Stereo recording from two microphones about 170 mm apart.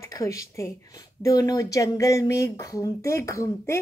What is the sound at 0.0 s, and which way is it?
Speech, 20° left (ahead or behind).